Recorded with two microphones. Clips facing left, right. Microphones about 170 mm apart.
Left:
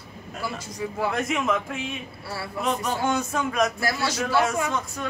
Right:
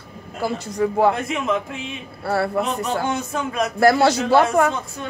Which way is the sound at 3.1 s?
30° right (ahead or behind).